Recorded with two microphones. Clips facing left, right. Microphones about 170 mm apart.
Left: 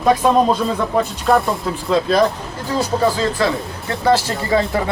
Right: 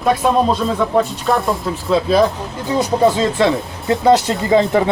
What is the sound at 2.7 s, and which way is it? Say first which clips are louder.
Speech: right 3 dB; 20° right (ahead or behind).